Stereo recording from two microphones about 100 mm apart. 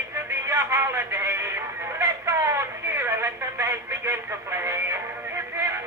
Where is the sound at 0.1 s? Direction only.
25° right (ahead or behind).